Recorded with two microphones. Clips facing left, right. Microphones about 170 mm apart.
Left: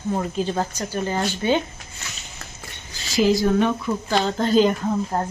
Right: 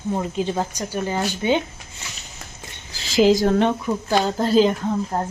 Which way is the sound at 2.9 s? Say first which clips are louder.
Right 3 dB; 90° right.